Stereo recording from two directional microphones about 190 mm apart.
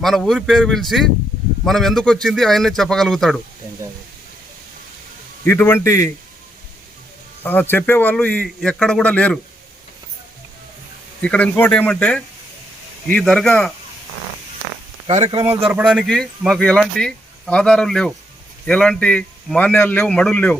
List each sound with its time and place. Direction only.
0.0 s speech: centre (ahead or behind)
5.5 s a man's voice: 10° left (ahead or behind)
7.4 s a man's voice: 10° left (ahead or behind)
11.2 s a man's voice: 5° left (ahead or behind)
15.0 s speech: 35° right (ahead or behind)
15.6 s speech: 5° right (ahead or behind)